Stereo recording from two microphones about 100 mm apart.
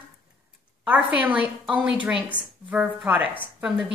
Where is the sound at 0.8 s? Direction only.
15° right (ahead or behind).